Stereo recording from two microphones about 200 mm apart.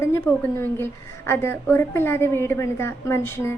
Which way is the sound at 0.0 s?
10° left (ahead or behind).